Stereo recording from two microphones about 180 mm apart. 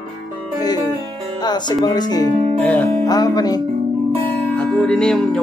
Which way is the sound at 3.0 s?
20° left (ahead or behind).